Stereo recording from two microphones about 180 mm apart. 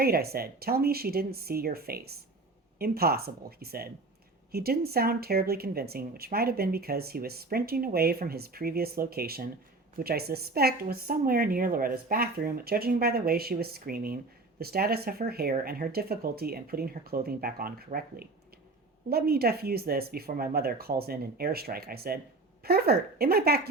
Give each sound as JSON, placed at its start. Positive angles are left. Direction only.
{"t": 0.0, "sound": "speech", "side_deg": -60}